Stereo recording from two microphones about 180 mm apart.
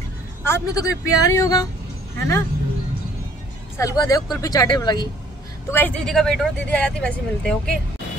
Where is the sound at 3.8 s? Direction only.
20° left (ahead or behind).